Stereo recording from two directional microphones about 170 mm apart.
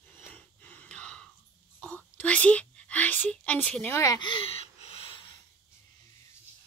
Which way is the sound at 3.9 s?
20° left (ahead or behind).